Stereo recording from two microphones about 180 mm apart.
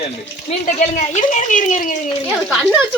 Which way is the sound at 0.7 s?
45° left (ahead or behind).